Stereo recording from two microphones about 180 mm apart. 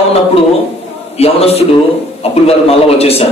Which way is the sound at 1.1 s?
35° left (ahead or behind).